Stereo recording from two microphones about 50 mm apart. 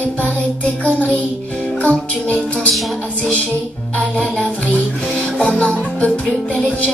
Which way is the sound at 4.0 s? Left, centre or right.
Left.